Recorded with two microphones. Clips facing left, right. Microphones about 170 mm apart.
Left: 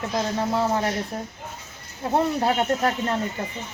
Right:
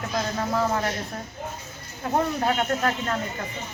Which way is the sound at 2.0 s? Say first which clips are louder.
Left 2 dB; 25° left (ahead or behind).